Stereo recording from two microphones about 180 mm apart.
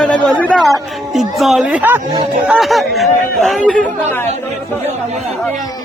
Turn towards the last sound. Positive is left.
turn(degrees=10)  # may be behind; listen again after turning